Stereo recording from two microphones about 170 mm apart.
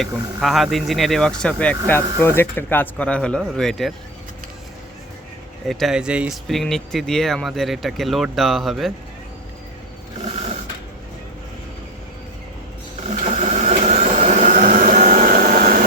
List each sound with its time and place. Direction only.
0.0 s speech: centre (ahead or behind)
5.6 s speech: centre (ahead or behind)
13.4 s vehicle: 40° right (ahead or behind)